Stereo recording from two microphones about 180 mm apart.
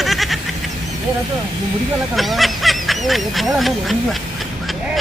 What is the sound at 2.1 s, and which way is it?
Speech, centre (ahead or behind).